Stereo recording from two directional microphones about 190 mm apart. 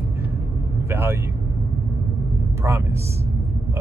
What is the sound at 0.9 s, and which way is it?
Speech, 10° right (ahead or behind).